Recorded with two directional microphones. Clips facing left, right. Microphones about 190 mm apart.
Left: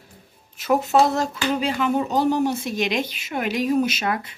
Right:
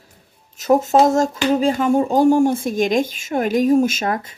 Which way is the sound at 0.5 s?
45° right (ahead or behind).